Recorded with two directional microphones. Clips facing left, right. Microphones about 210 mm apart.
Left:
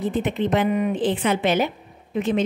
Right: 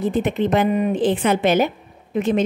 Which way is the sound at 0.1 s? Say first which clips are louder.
Right 3 dB; 45° right (ahead or behind).